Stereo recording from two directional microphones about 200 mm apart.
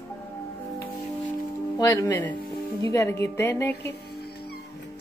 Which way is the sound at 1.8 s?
15° left (ahead or behind).